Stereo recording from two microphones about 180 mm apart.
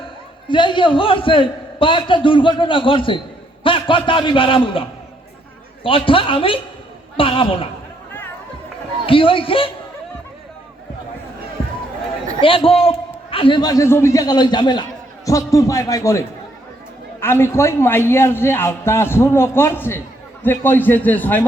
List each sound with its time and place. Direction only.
0.4 s a man's voice: 25° left (ahead or behind)
9.0 s a man's voice: 30° left (ahead or behind)
12.4 s a man's voice: 30° left (ahead or behind); by 21.4 s 10° left (ahead or behind)